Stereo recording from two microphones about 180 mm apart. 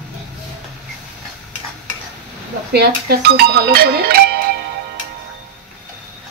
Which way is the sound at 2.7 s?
65° right (ahead or behind).